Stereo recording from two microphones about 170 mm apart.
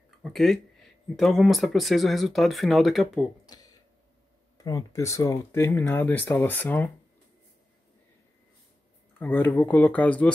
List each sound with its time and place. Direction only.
0.2 s speech: centre (ahead or behind)
3.4 s a sound: 20° left (ahead or behind)
4.6 s speech: 20° left (ahead or behind)
9.2 s speech: 10° left (ahead or behind)